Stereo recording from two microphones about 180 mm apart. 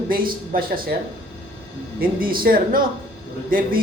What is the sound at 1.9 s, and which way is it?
A woman's voice, 55° right (ahead or behind).